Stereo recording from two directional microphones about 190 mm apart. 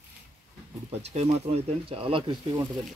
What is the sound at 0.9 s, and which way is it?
Speech, 35° right (ahead or behind).